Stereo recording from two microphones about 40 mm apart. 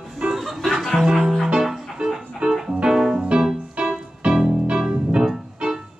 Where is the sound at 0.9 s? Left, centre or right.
Centre.